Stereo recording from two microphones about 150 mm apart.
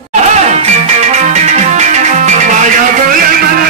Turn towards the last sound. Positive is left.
turn(degrees=-70)  # may be behind; listen again after turning